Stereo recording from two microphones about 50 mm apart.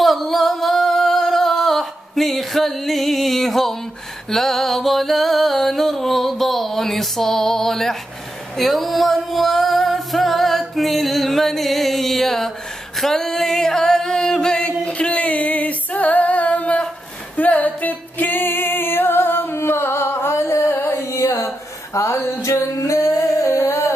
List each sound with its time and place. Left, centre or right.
0.0 s singing: centre
4.3 s music: centre; by 16.8 s left
17.4 s female singing: left
20.9 s music: left
21.9 s music: left